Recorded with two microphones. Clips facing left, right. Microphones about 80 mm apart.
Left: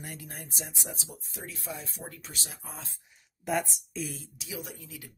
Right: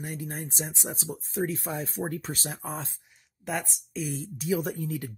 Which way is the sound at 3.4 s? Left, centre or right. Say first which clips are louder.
Left 2 dB; centre.